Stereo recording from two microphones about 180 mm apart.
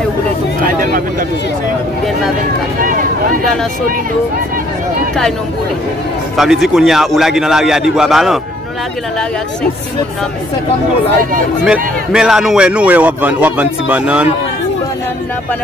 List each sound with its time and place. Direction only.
2.8 s a sound: 50° right (ahead or behind)
6.3 s a man's voice: centre (ahead or behind)
11.6 s a man's voice: 5° right (ahead or behind)